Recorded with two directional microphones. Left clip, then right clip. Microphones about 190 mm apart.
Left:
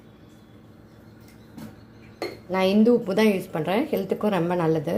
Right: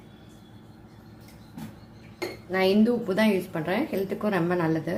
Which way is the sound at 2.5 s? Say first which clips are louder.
Left 3 dB; 25° left (ahead or behind).